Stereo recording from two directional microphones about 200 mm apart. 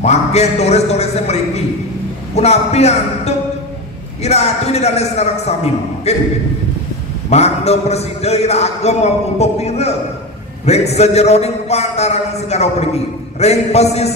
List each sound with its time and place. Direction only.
0.0 s a man's voice: 35° left (ahead or behind)
7.2 s a man's voice: 30° left (ahead or behind)